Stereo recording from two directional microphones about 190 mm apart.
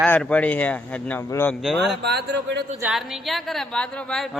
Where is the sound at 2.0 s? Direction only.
60° right (ahead or behind).